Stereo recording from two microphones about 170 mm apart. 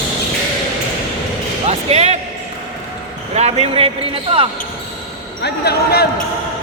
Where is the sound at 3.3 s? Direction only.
40° right (ahead or behind).